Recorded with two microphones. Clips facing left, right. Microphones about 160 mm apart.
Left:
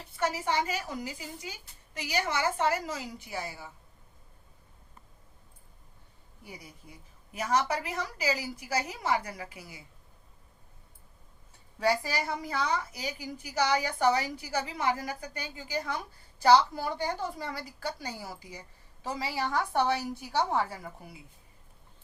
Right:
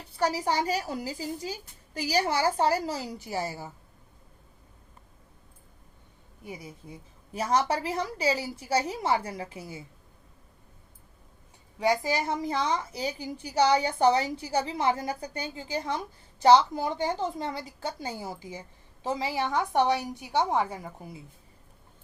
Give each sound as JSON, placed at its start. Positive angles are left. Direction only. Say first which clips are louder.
{"t": 0.2, "sound": "a woman's voice", "louder": "right 3 dB", "side_deg": -35}
{"t": 6.4, "sound": "a woman's voice", "louder": "right 6 dB", "side_deg": -25}
{"t": 11.8, "sound": "a woman's voice", "louder": "right 3 dB", "side_deg": -20}